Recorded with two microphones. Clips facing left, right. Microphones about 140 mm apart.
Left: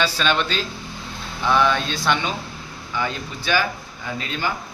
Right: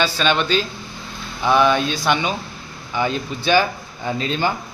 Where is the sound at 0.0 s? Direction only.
Centre (ahead or behind).